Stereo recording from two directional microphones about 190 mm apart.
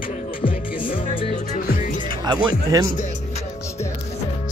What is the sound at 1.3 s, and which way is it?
Music, 45° left (ahead or behind).